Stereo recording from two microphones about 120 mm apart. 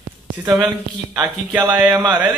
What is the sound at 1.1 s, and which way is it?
Speech, 15° right (ahead or behind).